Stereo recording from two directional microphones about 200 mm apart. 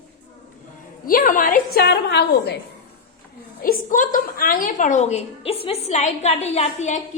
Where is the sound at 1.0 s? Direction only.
45° left (ahead or behind).